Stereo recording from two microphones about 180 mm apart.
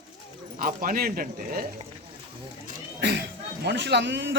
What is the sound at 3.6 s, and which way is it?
Speech, 70° right (ahead or behind).